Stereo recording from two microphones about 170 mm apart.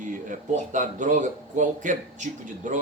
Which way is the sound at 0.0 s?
50° right (ahead or behind).